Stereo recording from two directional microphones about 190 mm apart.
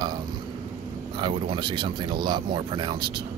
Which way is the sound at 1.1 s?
25° right (ahead or behind).